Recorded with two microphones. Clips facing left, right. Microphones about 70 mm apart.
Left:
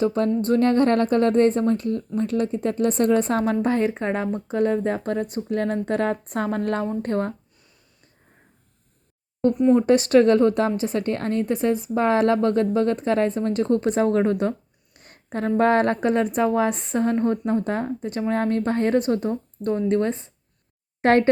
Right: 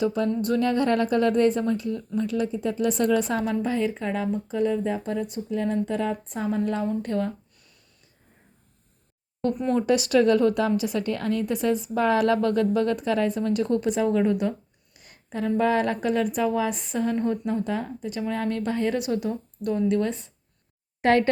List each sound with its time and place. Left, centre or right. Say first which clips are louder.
0.0 s a woman's voice: left 3 dB; left
6.8 s a woman's voice: left 2 dB; left
9.8 s a woman's voice: left 4 dB; left